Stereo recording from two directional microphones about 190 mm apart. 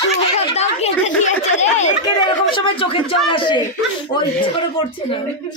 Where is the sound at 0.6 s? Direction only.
35° left (ahead or behind).